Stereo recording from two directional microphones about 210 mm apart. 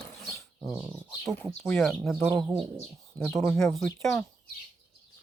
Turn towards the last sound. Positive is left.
turn(degrees=0)  # may be behind; listen again after turning